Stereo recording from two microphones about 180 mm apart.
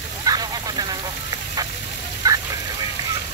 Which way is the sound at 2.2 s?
20° right (ahead or behind).